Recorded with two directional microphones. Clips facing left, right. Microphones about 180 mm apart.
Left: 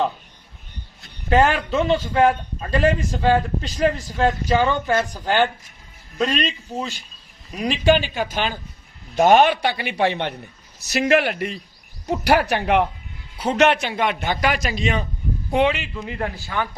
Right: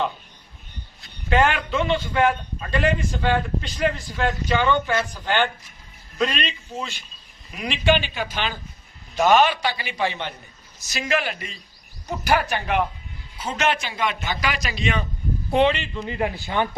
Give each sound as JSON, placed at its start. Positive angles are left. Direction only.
{"t": 1.3, "sound": "a man's voice", "side_deg": 40}
{"t": 15.4, "sound": "speech", "side_deg": 10}
{"t": 16.1, "sound": "speech", "side_deg": -15}